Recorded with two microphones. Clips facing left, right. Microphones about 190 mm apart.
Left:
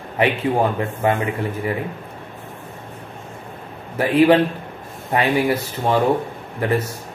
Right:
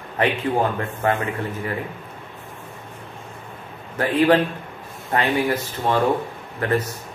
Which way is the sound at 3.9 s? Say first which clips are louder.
Left 3 dB; 10° left (ahead or behind).